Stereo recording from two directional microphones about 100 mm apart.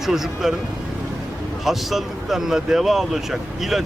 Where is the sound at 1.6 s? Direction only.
Centre (ahead or behind).